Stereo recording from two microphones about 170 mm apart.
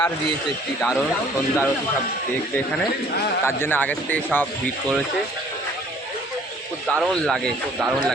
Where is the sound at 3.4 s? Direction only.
15° left (ahead or behind).